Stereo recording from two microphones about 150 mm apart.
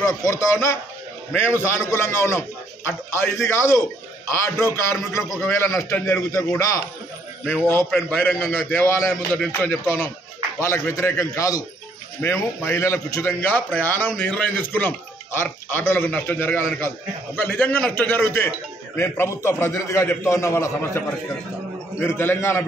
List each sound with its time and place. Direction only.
0.2 s a man's voice: 20° left (ahead or behind)
7.9 s a man's voice: 10° left (ahead or behind)
22.0 s a man's voice: 15° left (ahead or behind)